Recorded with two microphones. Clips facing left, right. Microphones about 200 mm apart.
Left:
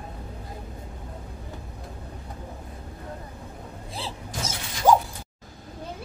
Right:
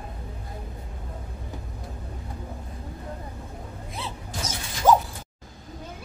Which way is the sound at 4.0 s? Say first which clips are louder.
Left 1 dB; 30° left (ahead or behind).